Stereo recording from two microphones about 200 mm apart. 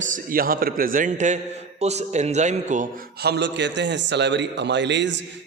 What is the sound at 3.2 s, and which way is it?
A man's voice, 55° right (ahead or behind).